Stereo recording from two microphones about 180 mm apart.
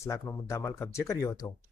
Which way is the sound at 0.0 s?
15° left (ahead or behind).